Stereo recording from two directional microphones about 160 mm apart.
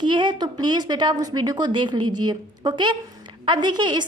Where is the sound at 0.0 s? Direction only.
30° right (ahead or behind).